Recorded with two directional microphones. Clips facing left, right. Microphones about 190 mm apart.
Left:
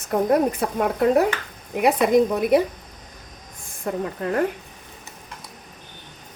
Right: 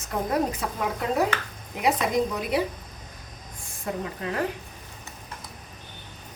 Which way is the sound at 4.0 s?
50° left (ahead or behind).